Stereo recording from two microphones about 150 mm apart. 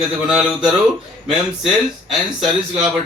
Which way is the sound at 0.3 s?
5° right (ahead or behind).